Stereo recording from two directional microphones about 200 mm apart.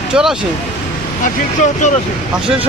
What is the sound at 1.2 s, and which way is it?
Speech, 40° left (ahead or behind).